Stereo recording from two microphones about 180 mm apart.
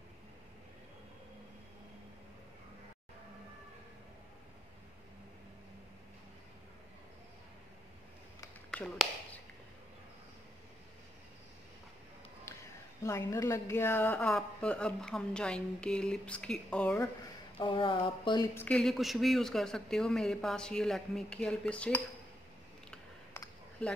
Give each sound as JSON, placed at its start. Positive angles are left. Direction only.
{"t": 8.6, "sound": "a sound", "side_deg": 5}
{"t": 13.0, "sound": "speech", "side_deg": 15}
{"t": 17.6, "sound": "speech", "side_deg": 30}
{"t": 18.5, "sound": "speech", "side_deg": 10}